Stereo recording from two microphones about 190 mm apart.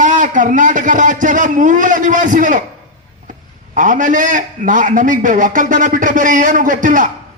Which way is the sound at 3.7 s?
40° right (ahead or behind).